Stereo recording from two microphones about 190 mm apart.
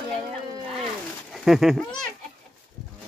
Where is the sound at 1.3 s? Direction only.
Centre (ahead or behind).